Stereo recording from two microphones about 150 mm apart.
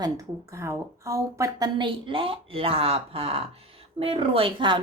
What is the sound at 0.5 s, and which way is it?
Speech, 20° right (ahead or behind).